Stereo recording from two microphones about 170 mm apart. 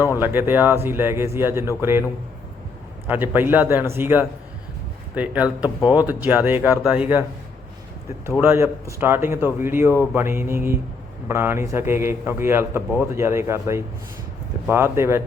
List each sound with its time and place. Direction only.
0.2 s a man's voice: 10° right (ahead or behind)
3.1 s a man's voice: 10° right (ahead or behind)
8.4 s a man's voice: 15° right (ahead or behind)